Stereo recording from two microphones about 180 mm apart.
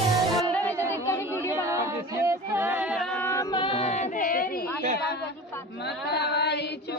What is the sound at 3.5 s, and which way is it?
Child singing, 30° left (ahead or behind).